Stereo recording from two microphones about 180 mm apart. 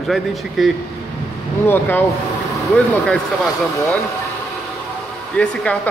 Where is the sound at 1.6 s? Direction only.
10° left (ahead or behind).